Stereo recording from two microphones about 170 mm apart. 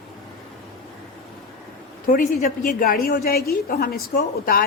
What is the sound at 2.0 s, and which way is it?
A woman's voice, 50° left (ahead or behind).